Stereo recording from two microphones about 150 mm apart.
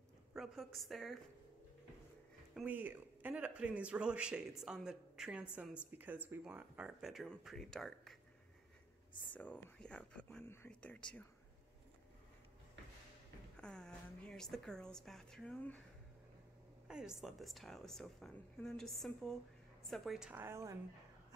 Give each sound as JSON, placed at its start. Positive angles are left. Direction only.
{"t": 0.3, "sound": "speech", "side_deg": 0}
{"t": 2.5, "sound": "speech", "side_deg": -10}
{"t": 9.3, "sound": "speech", "side_deg": 10}
{"t": 13.6, "sound": "speech", "side_deg": 5}
{"t": 16.8, "sound": "speech", "side_deg": -5}